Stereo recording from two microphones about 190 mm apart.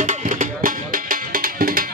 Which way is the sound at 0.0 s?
40° right (ahead or behind).